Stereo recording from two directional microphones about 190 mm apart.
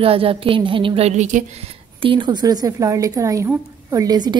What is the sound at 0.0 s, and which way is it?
A woman's voice, 30° right (ahead or behind).